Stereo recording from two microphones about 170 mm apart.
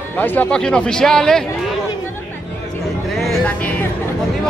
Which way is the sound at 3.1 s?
5° left (ahead or behind).